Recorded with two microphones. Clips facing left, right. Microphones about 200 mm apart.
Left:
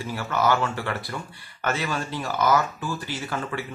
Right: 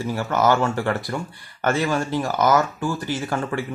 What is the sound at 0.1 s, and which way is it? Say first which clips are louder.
Speech: right 3 dB; 45° right (ahead or behind).